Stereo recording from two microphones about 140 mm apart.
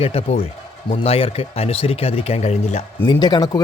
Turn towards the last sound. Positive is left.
turn(degrees=30)  # may be behind; listen again after turning